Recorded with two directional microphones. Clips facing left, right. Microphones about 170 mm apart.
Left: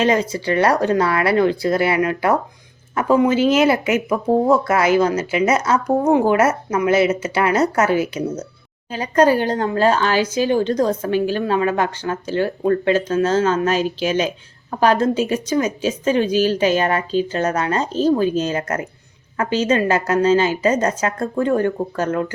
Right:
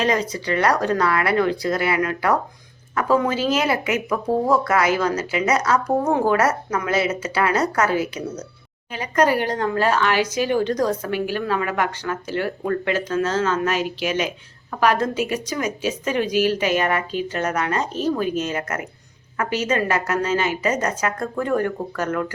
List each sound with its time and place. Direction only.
0.0 s speech: 25° left (ahead or behind)